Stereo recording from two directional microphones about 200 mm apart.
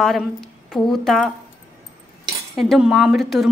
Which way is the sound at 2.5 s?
Centre (ahead or behind).